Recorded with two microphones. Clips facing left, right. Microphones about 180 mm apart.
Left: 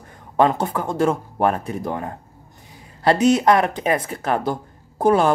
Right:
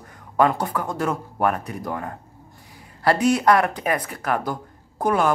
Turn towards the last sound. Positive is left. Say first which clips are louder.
# left 4 dB
turn(degrees=30)  # may be behind; listen again after turning